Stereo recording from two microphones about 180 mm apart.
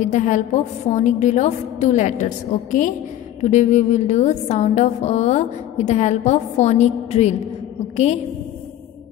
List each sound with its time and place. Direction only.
0.0 s a woman's voice: 40° left (ahead or behind)